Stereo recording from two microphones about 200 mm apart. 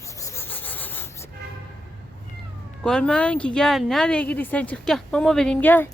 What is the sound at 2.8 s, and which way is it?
Speech, 5° left (ahead or behind).